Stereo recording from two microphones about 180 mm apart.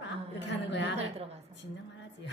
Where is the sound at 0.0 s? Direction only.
85° left.